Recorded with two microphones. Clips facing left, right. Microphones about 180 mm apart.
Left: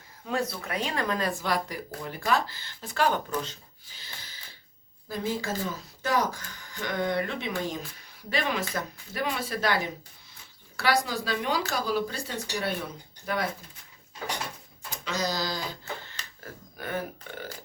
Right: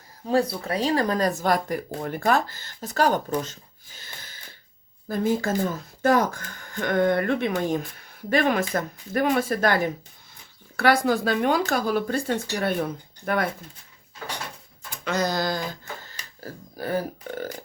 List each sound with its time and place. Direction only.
0.3 s speech: 35° right (ahead or behind)
3.9 s a sound: 50° right (ahead or behind)
5.0 s speech: 50° right (ahead or behind)
14.8 s speech: 55° right (ahead or behind)
16.4 s speech: 35° right (ahead or behind)